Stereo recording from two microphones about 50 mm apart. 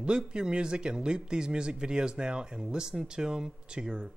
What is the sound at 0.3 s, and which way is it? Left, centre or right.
Speech, centre.